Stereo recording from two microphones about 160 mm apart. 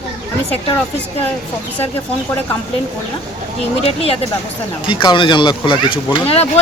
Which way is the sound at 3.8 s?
40° left (ahead or behind).